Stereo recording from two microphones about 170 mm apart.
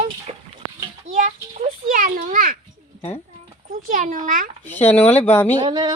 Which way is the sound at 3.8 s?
50° right (ahead or behind).